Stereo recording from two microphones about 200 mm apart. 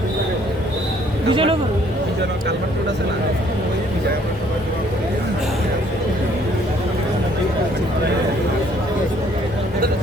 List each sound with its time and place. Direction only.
1.3 s speech: 25° right (ahead or behind)